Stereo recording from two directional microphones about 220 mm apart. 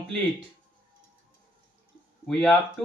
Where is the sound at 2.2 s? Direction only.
5° left (ahead or behind).